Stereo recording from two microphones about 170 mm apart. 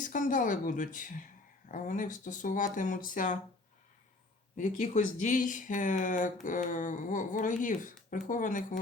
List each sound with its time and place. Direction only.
0.0 s speech: 50° left (ahead or behind)
4.5 s speech: 45° left (ahead or behind)